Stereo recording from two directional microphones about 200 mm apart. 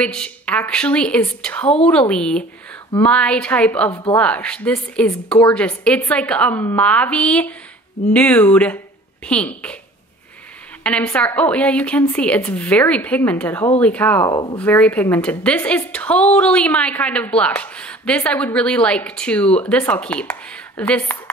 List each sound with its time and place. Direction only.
0.0 s a woman's voice: 5° left (ahead or behind)
10.8 s a woman's voice: 5° left (ahead or behind)
14.6 s a woman's voice: 10° left (ahead or behind)